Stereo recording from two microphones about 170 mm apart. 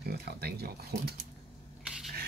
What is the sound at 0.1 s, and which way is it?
Speech, 70° right (ahead or behind).